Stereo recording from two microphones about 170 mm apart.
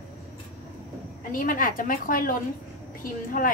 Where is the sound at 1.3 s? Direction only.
55° left (ahead or behind).